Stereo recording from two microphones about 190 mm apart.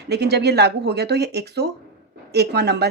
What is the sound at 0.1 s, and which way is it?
Speech, 60° right (ahead or behind).